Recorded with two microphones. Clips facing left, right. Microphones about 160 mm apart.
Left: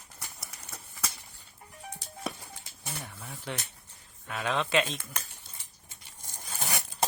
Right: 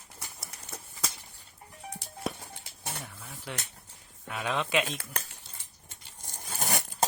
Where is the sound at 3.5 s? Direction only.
5° right (ahead or behind).